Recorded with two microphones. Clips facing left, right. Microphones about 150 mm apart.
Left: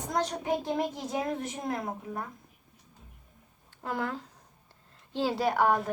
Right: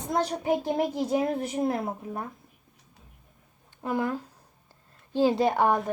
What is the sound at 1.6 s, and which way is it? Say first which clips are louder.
Speech: right 5 dB; 30° right (ahead or behind).